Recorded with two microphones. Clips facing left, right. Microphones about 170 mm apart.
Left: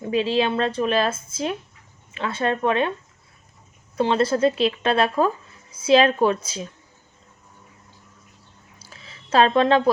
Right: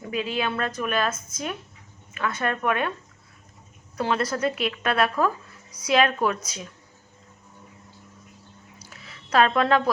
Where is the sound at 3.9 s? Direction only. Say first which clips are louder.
Left 5 dB; 25° left (ahead or behind).